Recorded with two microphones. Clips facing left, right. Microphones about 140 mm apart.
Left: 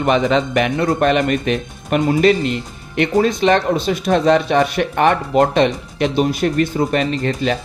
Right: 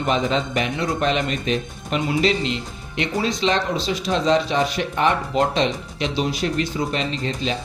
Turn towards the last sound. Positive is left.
turn(degrees=60)  # may be behind; listen again after turning